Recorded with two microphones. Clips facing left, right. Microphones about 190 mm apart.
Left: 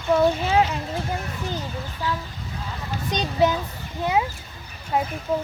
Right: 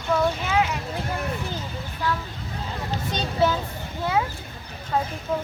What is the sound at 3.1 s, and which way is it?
Speech, 15° left (ahead or behind).